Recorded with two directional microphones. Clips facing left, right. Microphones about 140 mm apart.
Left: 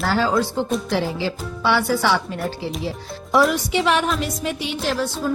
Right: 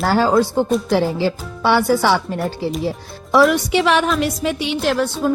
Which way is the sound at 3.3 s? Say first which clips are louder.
Right 4 dB; 80° right.